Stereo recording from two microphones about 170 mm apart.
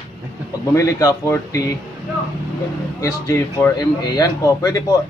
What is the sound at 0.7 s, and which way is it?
A man's voice, 20° left (ahead or behind).